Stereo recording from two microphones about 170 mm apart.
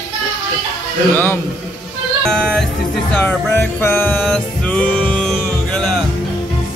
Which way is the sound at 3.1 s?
10° left (ahead or behind).